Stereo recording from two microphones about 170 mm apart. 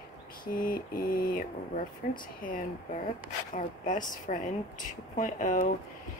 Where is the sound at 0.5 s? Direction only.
55° left (ahead or behind).